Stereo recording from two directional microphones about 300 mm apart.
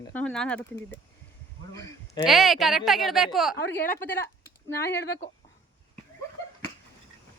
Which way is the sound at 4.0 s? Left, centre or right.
Centre.